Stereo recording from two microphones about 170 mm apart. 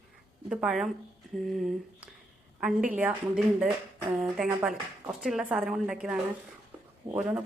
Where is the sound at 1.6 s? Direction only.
Centre (ahead or behind).